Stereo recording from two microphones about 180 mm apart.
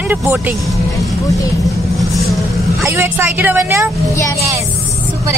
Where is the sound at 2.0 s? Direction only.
Centre (ahead or behind).